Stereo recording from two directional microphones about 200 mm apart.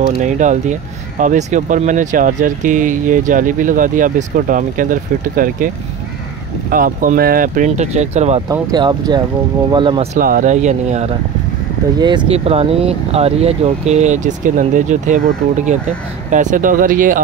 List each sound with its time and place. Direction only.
0.0 s speech: 40° right (ahead or behind)
6.7 s speech: 45° right (ahead or behind)
8.5 s speech: 20° right (ahead or behind)
10.1 s speech: 45° right (ahead or behind)